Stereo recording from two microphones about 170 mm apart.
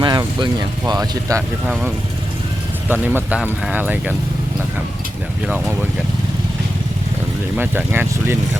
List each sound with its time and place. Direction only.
0.0 s speech: 25° right (ahead or behind)
1.6 s speech: 5° right (ahead or behind)
2.9 s speech: 10° right (ahead or behind)
5.5 s speech: 10° right (ahead or behind)
7.5 s speech: 10° right (ahead or behind)